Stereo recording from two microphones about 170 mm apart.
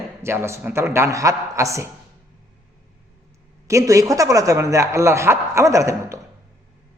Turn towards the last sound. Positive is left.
turn(degrees=-20)  # may be behind; listen again after turning